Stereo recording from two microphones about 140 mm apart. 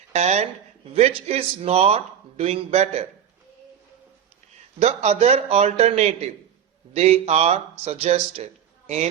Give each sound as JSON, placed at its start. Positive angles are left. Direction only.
{"t": 0.1, "sound": "speech", "side_deg": -50}
{"t": 4.8, "sound": "speech", "side_deg": -50}